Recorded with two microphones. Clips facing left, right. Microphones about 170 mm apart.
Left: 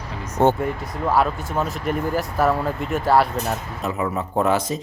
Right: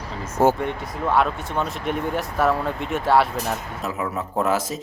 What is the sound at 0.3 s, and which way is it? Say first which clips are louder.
Speech: left 1 dB; centre (ahead or behind).